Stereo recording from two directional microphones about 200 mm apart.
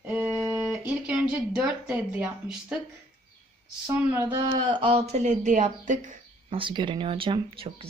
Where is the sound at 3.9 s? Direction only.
10° right (ahead or behind); by 6.6 s 40° right (ahead or behind).